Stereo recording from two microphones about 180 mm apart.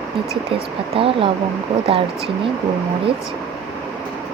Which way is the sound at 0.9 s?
30° right (ahead or behind).